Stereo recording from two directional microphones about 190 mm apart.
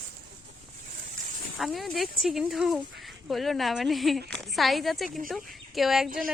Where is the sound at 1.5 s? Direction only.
Centre (ahead or behind).